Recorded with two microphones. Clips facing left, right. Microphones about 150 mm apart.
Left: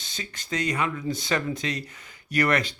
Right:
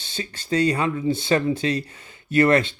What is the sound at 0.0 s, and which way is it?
Speech, 30° right (ahead or behind).